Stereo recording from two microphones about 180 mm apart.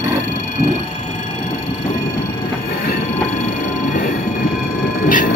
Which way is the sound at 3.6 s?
50° left (ahead or behind).